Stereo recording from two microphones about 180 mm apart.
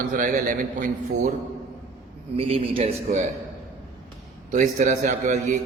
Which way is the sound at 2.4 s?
35° right (ahead or behind).